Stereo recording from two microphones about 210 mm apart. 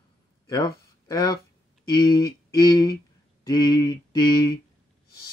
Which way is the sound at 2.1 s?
20° left (ahead or behind).